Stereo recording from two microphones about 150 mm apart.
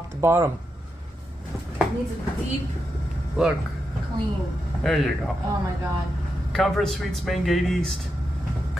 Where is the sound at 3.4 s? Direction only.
5° right (ahead or behind).